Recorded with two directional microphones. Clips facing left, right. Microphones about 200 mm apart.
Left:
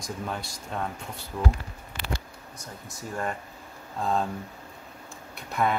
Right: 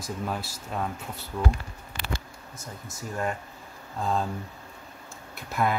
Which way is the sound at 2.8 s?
Centre (ahead or behind).